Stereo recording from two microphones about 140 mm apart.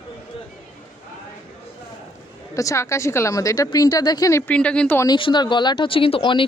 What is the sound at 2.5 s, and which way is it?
Speech, 20° left (ahead or behind).